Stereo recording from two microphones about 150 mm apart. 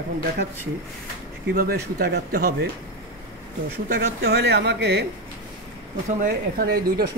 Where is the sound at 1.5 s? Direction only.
80° right.